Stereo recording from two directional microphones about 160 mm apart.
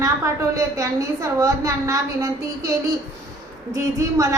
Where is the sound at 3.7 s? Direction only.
20° right (ahead or behind).